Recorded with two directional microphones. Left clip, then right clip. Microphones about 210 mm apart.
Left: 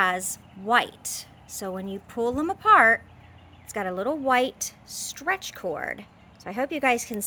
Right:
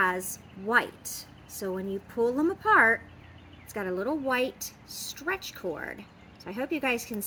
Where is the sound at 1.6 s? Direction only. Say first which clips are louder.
Even; 50° left (ahead or behind).